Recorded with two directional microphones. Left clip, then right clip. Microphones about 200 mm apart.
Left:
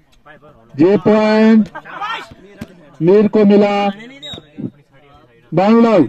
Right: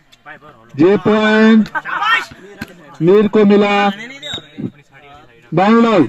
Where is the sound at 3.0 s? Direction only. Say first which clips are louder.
Even; 15° right (ahead or behind).